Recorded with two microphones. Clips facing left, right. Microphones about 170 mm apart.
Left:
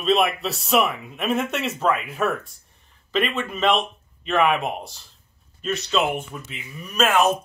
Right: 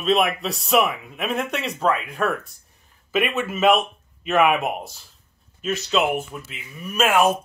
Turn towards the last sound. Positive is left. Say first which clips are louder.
# right 1 dB
turn(degrees=-10)  # may be behind; listen again after turning